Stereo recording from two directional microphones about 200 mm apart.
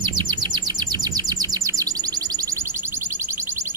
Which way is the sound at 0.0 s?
20° right (ahead or behind).